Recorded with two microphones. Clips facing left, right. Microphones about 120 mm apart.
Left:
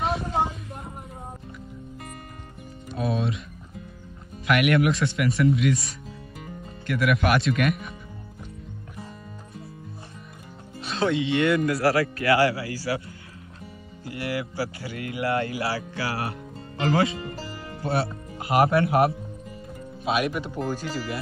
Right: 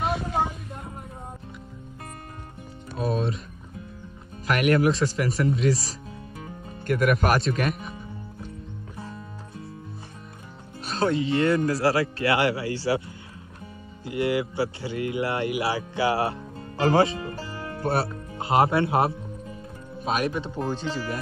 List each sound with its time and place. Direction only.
3.0 s music: 40° right (ahead or behind)
4.5 s speech: 35° right (ahead or behind)
6.9 s speech: 40° right (ahead or behind)
10.9 s speech: 40° right (ahead or behind)
14.0 s speech: 20° right (ahead or behind)
18.4 s speech: 25° right (ahead or behind)